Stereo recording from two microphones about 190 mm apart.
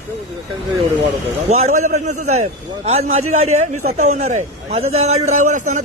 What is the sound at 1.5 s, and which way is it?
A man's voice, 35° right (ahead or behind).